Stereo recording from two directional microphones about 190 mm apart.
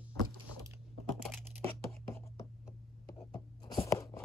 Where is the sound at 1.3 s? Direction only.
10° left (ahead or behind).